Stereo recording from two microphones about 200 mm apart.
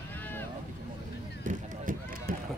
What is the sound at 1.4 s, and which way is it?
Run, 45° right (ahead or behind).